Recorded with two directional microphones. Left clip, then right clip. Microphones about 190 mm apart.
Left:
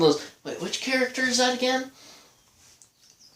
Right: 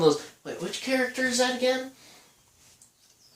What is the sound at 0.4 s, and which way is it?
Speech, 45° left (ahead or behind).